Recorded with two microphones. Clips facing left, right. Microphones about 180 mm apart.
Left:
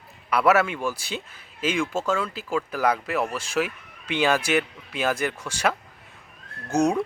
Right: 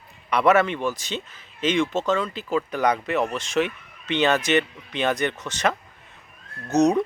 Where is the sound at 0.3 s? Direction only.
5° left (ahead or behind).